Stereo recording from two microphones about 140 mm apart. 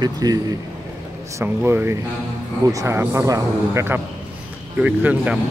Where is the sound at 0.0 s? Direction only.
25° right (ahead or behind).